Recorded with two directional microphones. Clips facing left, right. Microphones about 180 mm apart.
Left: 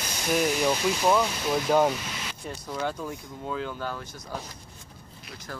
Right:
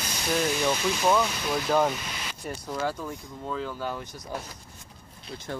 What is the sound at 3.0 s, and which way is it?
Speech, centre (ahead or behind).